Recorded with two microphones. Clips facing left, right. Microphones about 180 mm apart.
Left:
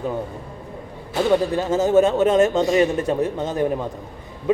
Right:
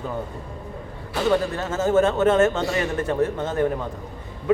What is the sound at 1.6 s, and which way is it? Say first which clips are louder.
A man's voice: left 3 dB; 15° left (ahead or behind).